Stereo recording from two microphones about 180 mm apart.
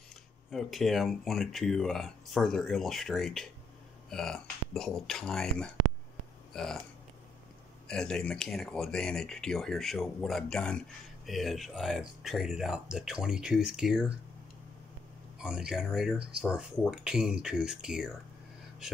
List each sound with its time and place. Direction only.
0.5 s speech: centre (ahead or behind)
7.9 s speech: 5° left (ahead or behind)
15.3 s speech: 5° right (ahead or behind)